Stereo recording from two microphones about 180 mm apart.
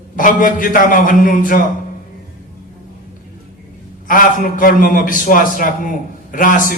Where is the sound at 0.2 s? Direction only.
50° left (ahead or behind).